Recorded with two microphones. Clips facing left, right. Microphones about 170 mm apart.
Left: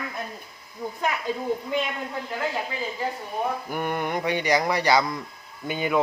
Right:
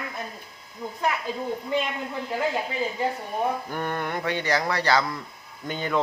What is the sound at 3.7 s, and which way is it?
Speech, 10° left (ahead or behind).